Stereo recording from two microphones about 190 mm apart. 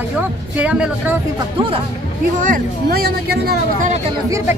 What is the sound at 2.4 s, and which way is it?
Speech, 50° right (ahead or behind).